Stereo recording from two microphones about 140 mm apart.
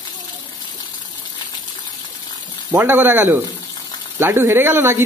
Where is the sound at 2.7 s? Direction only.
15° right (ahead or behind).